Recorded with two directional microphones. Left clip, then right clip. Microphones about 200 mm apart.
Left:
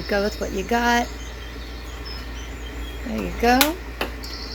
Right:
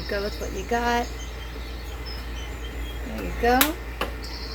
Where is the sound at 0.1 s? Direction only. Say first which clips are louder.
Left 6 dB; 50° left (ahead or behind).